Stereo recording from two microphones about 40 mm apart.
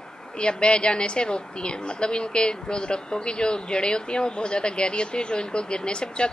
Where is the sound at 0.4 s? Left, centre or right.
Left.